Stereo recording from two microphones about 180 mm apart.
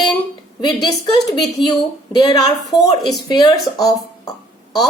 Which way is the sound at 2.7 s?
Centre (ahead or behind).